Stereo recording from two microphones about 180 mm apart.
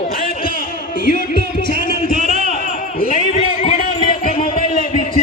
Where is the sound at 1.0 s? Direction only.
50° left (ahead or behind).